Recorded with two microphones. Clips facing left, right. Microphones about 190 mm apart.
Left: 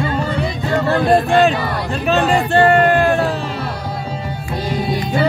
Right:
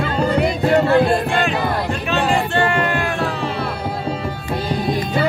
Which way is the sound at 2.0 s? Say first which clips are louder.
Left 5 dB; 35° left (ahead or behind).